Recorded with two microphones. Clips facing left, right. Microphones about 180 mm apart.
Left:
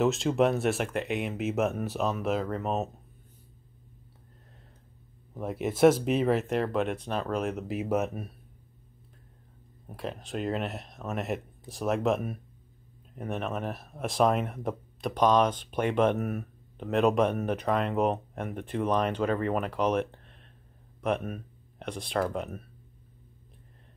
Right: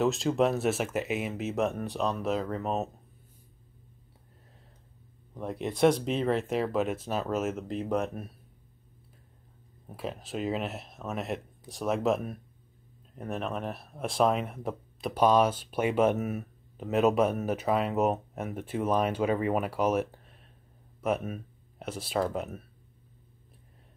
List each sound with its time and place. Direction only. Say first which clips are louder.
0.0 s speech: left 1 dB; centre (ahead or behind)
5.3 s speech: left 2 dB; 5° left (ahead or behind)
9.8 s speech: even; centre (ahead or behind)